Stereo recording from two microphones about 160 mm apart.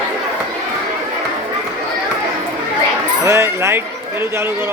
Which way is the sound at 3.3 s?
15° right (ahead or behind).